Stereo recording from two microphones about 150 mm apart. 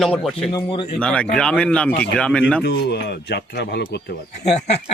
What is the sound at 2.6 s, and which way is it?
Speech, 90° left.